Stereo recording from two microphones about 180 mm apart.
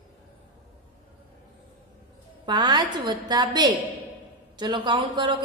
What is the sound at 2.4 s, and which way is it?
A woman's voice, 25° right (ahead or behind).